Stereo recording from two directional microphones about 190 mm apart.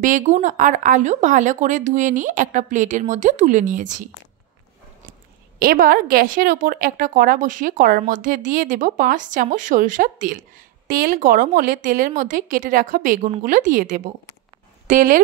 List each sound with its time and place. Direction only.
0.0 s a woman's voice: 40° right (ahead or behind)
5.6 s speech: 50° right (ahead or behind)